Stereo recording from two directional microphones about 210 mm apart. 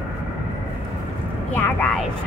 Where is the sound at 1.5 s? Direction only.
10° left (ahead or behind).